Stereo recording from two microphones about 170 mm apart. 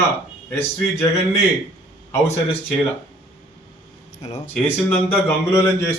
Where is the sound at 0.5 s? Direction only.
10° left (ahead or behind).